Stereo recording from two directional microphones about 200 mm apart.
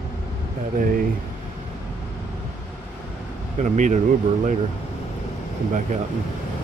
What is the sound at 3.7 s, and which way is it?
Speech, 35° right (ahead or behind).